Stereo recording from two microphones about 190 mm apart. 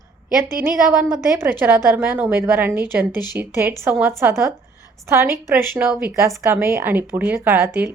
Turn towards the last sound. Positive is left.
turn(degrees=-10)  # may be behind; listen again after turning